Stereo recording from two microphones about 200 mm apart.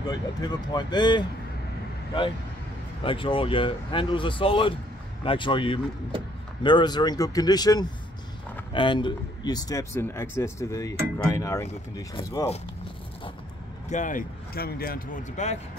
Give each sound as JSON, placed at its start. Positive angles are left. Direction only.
{"t": 0.0, "sound": "speech", "side_deg": 20}
{"t": 3.0, "sound": "speech", "side_deg": 25}
{"t": 13.8, "sound": "speech", "side_deg": 40}